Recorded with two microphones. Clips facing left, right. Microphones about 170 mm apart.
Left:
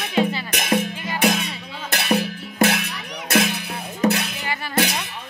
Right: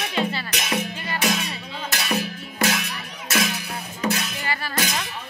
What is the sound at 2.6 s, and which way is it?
Music, 65° left (ahead or behind).